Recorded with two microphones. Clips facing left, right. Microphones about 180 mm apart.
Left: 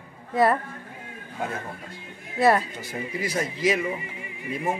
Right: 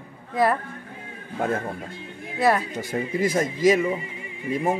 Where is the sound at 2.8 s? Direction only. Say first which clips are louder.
Right 6 dB; 50° right (ahead or behind).